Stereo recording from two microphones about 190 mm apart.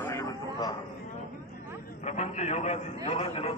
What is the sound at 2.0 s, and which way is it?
A man's voice, 35° left (ahead or behind).